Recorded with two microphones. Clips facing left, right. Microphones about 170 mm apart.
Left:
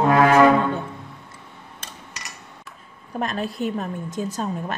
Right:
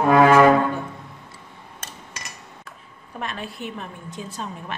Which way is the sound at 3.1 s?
40° left (ahead or behind).